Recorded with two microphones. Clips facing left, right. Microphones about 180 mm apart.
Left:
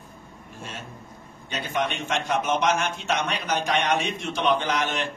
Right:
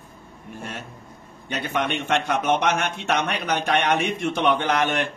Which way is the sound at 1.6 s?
60° right (ahead or behind).